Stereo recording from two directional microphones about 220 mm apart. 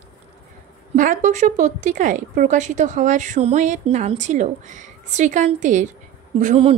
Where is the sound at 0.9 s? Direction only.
35° right (ahead or behind).